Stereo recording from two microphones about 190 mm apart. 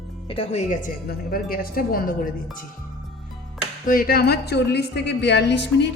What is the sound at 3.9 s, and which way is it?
A woman's voice, 50° left (ahead or behind).